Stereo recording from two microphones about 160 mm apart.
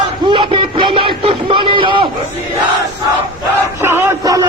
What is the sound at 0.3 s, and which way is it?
Music, 30° right (ahead or behind).